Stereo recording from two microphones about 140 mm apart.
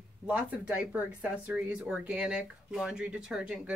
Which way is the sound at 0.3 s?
10° right (ahead or behind).